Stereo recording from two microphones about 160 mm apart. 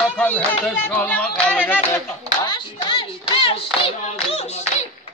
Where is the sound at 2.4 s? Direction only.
30° left (ahead or behind).